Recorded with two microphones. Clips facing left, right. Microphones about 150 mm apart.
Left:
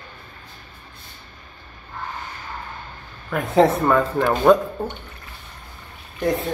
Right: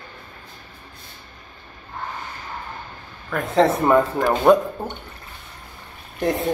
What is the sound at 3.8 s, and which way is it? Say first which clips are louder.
Speech: right 1 dB; 10° right (ahead or behind).